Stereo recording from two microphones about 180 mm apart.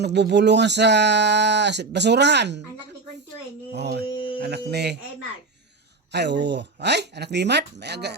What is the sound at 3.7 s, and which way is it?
Speech, 70° right (ahead or behind).